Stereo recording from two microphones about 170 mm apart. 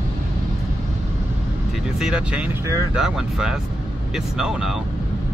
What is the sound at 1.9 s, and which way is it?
Speech, 5° right (ahead or behind).